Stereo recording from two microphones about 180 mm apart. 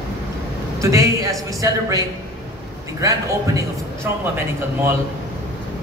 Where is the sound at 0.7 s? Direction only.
20° right (ahead or behind).